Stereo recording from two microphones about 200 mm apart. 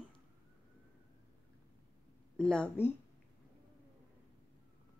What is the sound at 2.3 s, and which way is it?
Speech, 5° left (ahead or behind).